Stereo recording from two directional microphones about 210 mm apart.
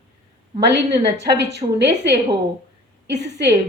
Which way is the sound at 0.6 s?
55° right (ahead or behind).